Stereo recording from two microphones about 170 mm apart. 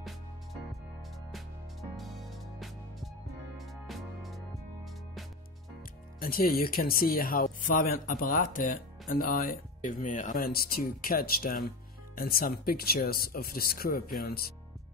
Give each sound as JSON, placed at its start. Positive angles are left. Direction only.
{"t": 1.3, "sound": "music", "side_deg": 0}
{"t": 6.1, "sound": "speech", "side_deg": 55}